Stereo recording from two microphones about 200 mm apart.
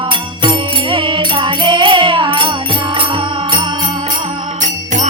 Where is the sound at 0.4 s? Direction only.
25° right (ahead or behind).